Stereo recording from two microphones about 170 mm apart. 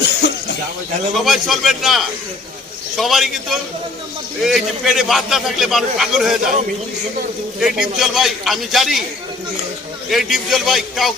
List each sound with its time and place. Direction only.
0.2 s a sound: 80° left
1.1 s a man's voice: centre (ahead or behind)
7.6 s a man's voice: centre (ahead or behind)
10.1 s a man's voice: centre (ahead or behind)